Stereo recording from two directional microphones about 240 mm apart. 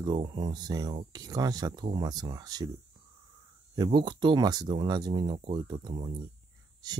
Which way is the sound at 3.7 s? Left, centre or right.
Centre.